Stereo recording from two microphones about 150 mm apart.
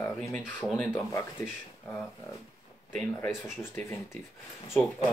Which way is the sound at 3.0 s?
10° left (ahead or behind).